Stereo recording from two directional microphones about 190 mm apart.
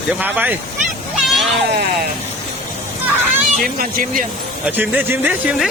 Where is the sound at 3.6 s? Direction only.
50° right (ahead or behind).